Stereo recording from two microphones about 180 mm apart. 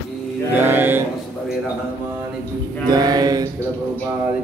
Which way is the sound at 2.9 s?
20° right (ahead or behind).